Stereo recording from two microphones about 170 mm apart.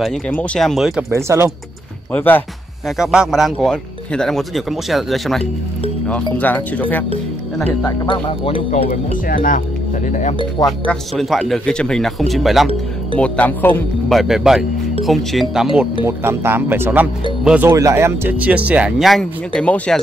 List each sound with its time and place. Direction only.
0.3 s speech: 5° left (ahead or behind)
1.1 s speech: 15° right (ahead or behind)
2.1 s speech: 10° left (ahead or behind)
3.0 s speech: 5° right (ahead or behind)
8.0 s speech: 30° left (ahead or behind)
9.3 s speech: 55° left (ahead or behind)
10.9 s speech: centre (ahead or behind)